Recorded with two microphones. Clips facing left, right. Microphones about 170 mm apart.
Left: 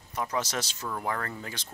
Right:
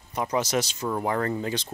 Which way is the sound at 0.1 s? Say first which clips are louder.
Right 6 dB; 20° right (ahead or behind).